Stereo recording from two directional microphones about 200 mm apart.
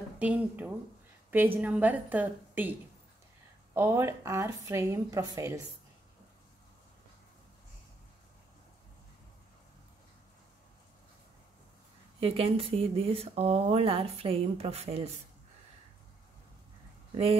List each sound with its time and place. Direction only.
0.2 s speech: 5° right (ahead or behind)
3.7 s speech: 15° right (ahead or behind)
12.2 s speech: 30° right (ahead or behind)